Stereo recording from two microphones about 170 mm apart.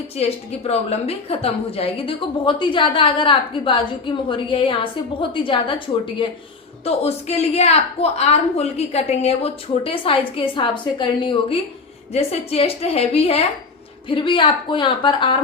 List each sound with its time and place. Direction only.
0.2 s a woman's voice: 35° left (ahead or behind)